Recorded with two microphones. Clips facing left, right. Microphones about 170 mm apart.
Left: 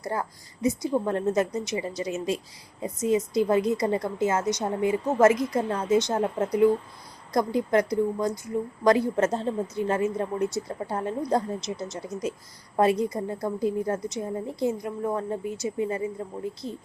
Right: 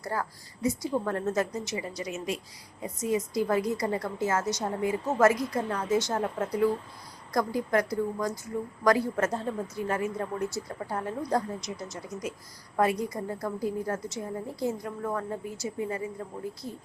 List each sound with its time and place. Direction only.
0.0 s a woman's voice: 20° left (ahead or behind)